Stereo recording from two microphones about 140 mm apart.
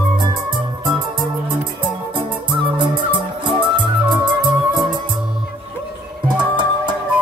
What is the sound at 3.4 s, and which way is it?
Music, 35° right (ahead or behind).